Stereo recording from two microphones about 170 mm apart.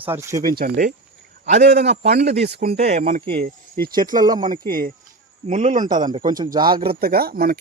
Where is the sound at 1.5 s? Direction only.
40° right (ahead or behind).